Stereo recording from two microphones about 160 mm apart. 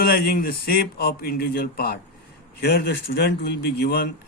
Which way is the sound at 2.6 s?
90° left.